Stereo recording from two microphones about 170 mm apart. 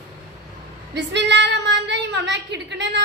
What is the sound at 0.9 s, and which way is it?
Speech, 90° right.